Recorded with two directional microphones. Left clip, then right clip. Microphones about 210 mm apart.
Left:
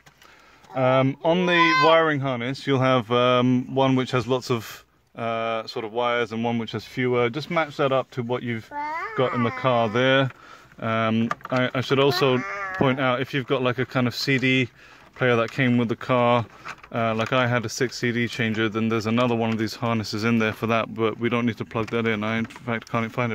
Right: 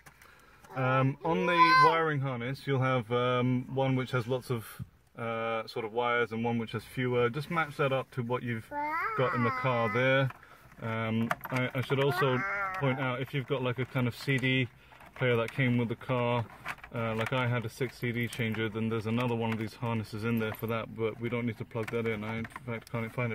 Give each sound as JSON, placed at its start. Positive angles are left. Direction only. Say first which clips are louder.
{"t": 0.7, "sound": "speech", "louder": "left 9 dB", "side_deg": 45}
{"t": 8.7, "sound": "a child's voice", "louder": "left 2 dB", "side_deg": 25}
{"t": 9.1, "sound": "speech", "louder": "left 9 dB", "side_deg": 45}